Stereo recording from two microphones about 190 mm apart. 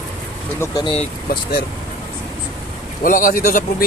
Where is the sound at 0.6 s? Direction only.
20° left (ahead or behind).